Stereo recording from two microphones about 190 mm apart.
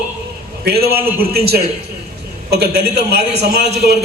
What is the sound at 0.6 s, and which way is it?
A man's voice, 55° right (ahead or behind).